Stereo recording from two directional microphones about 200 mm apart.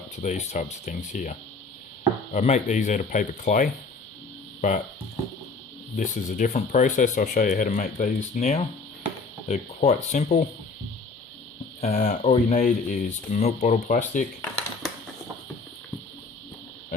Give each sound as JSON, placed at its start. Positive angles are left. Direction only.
{"t": 0.2, "sound": "speech", "side_deg": 35}
{"t": 6.0, "sound": "speech", "side_deg": 40}
{"t": 11.8, "sound": "speech", "side_deg": 35}
{"t": 14.5, "sound": "a sound", "side_deg": 0}